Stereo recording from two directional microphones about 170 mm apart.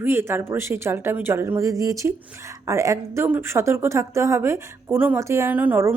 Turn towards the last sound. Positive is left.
turn(degrees=-15)  # may be behind; listen again after turning